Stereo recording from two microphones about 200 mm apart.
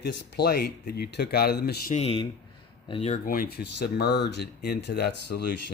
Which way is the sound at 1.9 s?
30° left (ahead or behind).